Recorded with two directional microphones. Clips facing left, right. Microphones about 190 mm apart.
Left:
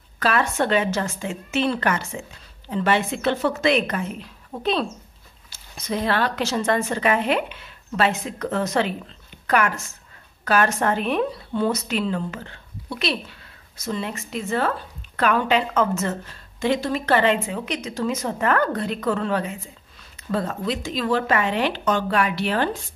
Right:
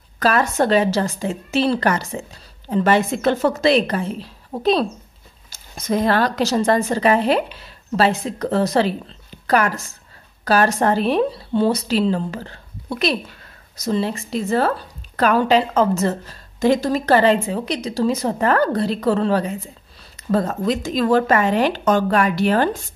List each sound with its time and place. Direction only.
0.2 s a woman's voice: 40° right (ahead or behind)
5.5 s a woman's voice: 45° right (ahead or behind)